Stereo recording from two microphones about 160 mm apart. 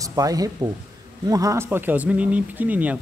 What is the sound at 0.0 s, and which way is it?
Speech, 20° right (ahead or behind).